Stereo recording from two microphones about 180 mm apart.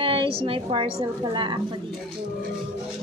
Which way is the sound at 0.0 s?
30° right (ahead or behind).